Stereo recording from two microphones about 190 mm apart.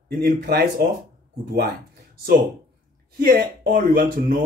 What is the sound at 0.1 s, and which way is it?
Speech, 55° right (ahead or behind).